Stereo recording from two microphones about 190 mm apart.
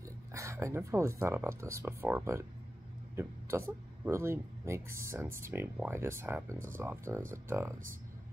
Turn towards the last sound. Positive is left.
turn(degrees=-15)  # may be behind; listen again after turning